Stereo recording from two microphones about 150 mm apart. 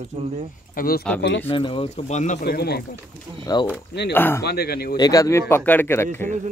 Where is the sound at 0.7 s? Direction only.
80° left.